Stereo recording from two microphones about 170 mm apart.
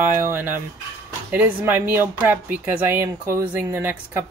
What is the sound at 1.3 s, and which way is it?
Speech, 10° right (ahead or behind).